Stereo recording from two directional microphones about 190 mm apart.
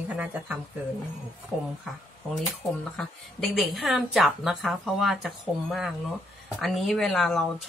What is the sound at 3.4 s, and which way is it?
Speech, centre (ahead or behind).